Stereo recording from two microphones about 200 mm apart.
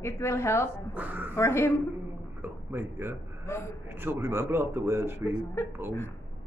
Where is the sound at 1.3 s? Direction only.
15° left (ahead or behind).